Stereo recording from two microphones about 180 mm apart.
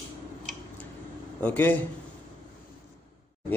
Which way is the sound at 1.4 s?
10° left (ahead or behind).